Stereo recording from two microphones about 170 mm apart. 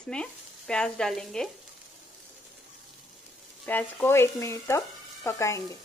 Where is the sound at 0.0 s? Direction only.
5° left (ahead or behind).